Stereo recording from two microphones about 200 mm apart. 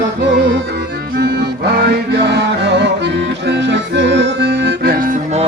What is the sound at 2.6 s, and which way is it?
Music, 60° right (ahead or behind).